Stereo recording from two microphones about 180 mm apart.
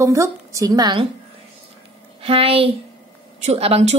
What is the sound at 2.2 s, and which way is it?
Speech, 30° right (ahead or behind).